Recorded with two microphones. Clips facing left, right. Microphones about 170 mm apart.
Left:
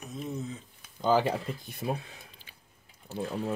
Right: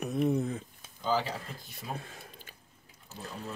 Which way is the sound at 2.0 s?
50° right (ahead or behind).